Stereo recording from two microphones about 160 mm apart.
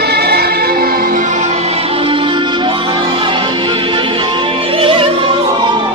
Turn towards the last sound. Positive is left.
turn(degrees=-35)  # may be behind; listen again after turning